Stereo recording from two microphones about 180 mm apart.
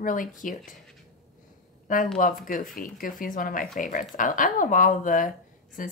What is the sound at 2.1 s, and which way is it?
Speech, 50° left (ahead or behind).